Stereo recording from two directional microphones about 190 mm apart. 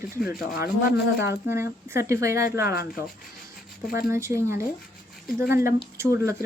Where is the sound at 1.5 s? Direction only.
15° right (ahead or behind).